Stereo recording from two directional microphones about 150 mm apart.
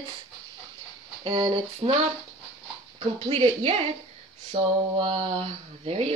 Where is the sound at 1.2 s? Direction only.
30° right (ahead or behind).